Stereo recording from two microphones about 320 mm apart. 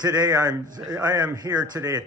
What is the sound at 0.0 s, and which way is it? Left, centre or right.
Speech, centre.